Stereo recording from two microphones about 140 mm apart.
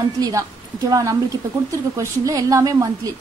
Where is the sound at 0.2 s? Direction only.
25° right (ahead or behind).